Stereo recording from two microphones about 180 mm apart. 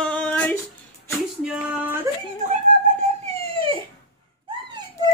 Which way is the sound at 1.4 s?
5° right (ahead or behind).